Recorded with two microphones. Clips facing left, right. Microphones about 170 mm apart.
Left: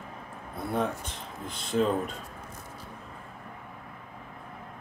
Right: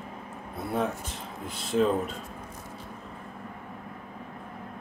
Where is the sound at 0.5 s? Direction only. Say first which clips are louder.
Even; 5° right (ahead or behind).